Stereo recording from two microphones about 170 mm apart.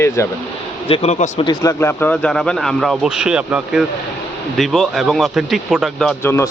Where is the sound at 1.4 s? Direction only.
20° left (ahead or behind); by 6.1 s centre (ahead or behind).